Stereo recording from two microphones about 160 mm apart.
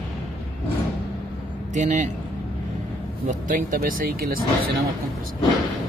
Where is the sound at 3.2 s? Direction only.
60° right (ahead or behind).